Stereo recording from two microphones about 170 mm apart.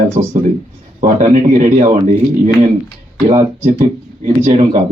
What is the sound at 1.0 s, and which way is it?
Speech, 45° right (ahead or behind).